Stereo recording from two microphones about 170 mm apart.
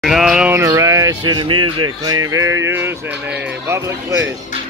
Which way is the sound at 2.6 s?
15° right (ahead or behind).